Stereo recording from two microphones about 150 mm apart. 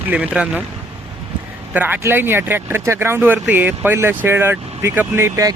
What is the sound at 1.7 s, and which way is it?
Speech, 10° right (ahead or behind).